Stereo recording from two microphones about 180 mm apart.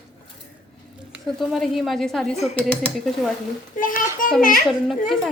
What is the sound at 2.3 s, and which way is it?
Speech, 40° left (ahead or behind).